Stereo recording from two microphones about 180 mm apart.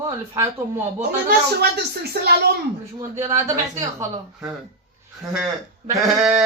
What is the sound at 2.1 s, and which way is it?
Speech, 60° right (ahead or behind).